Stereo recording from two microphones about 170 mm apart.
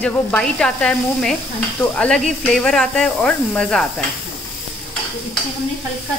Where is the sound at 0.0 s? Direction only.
10° left (ahead or behind).